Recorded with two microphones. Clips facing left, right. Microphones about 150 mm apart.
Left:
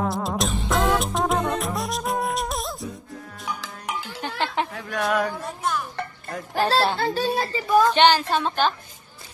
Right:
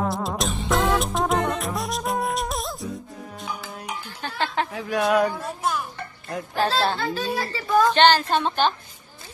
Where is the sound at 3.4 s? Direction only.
80° left.